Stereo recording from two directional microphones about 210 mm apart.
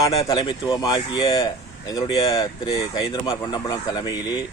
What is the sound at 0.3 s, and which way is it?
Speech, 20° left (ahead or behind).